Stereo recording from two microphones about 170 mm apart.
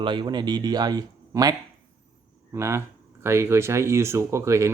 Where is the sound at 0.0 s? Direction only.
30° right (ahead or behind).